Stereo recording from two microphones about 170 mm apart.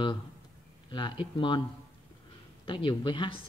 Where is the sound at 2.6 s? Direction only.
30° left (ahead or behind).